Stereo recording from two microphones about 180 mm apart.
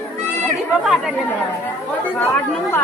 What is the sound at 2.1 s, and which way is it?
Speech, 10° left (ahead or behind).